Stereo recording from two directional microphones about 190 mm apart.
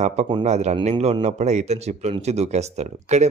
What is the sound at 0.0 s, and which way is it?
Speech, 35° right (ahead or behind).